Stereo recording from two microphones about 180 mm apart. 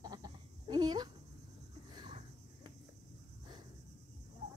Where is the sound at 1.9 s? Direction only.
25° right (ahead or behind).